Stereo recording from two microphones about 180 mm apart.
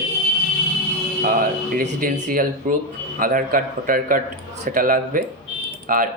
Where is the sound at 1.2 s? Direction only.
50° right (ahead or behind).